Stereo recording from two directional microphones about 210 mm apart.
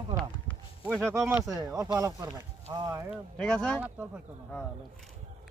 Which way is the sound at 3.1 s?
5° left (ahead or behind).